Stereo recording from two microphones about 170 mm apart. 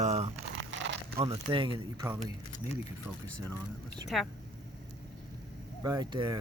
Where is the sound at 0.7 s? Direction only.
90° right.